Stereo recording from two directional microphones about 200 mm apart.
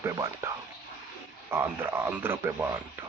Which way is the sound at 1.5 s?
10° right (ahead or behind).